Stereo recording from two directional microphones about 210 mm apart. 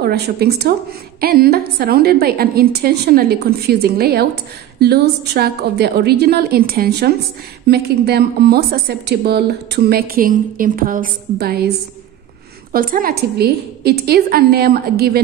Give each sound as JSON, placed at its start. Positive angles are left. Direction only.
{"t": 0.0, "sound": "a woman's voice", "side_deg": -50}
{"t": 12.7, "sound": "a woman's voice", "side_deg": -45}